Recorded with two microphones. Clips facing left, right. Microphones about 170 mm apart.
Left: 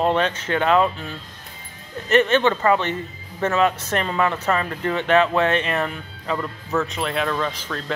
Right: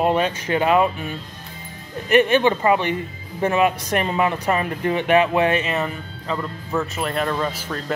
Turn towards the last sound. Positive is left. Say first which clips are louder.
# right 1 dB
turn(degrees=-10)  # may be behind; listen again after turning